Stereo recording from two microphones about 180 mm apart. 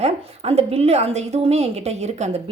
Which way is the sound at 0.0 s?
35° right (ahead or behind).